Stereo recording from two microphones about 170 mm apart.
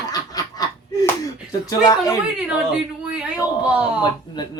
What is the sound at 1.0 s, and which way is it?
Slap, 20° left (ahead or behind).